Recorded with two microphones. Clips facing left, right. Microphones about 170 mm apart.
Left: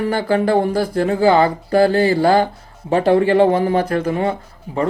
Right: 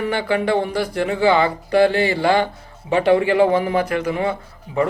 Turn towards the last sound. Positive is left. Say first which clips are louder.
# right 1 dB
turn(degrees=45)  # may be behind; listen again after turning